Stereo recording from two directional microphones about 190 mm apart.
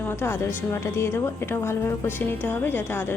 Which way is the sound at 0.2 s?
15° left (ahead or behind).